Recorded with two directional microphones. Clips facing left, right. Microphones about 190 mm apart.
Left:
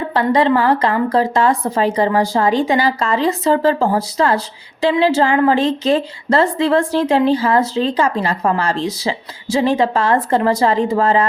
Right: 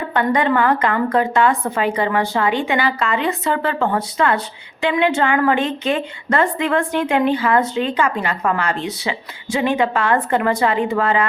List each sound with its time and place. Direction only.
0.1 s a woman's voice: 30° left (ahead or behind)